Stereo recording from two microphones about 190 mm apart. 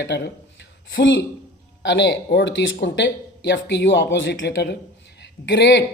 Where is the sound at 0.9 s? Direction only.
85° left.